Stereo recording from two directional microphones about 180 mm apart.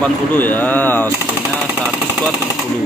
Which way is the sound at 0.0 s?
10° left (ahead or behind).